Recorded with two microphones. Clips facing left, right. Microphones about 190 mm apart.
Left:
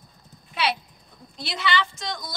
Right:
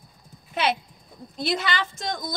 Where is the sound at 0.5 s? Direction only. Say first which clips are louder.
Right 2 dB; 50° right (ahead or behind).